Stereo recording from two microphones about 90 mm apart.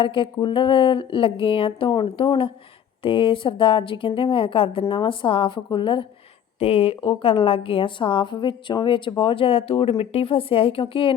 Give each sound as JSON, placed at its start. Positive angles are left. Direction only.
{"t": 0.0, "sound": "a woman's voice", "side_deg": 70}
{"t": 2.2, "sound": "speech", "side_deg": 90}
{"t": 3.0, "sound": "a woman's voice", "side_deg": 75}
{"t": 6.6, "sound": "a woman's voice", "side_deg": 90}